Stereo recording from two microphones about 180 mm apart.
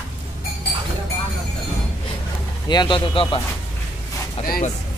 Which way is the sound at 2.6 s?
25° left (ahead or behind).